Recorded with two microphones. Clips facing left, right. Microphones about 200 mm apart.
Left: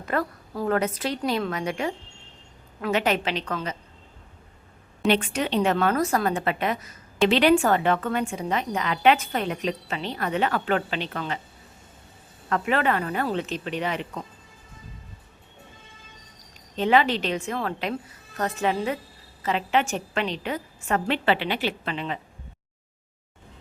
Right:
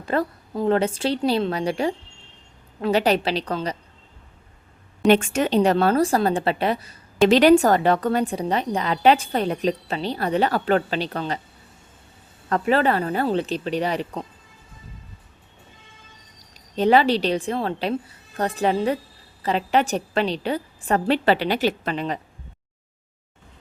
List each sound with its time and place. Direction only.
0.0 s a woman's voice: 30° right (ahead or behind)
5.0 s a woman's voice: 45° right (ahead or behind)
12.5 s a woman's voice: 35° right (ahead or behind)
16.6 s a woman's voice: 40° right (ahead or behind)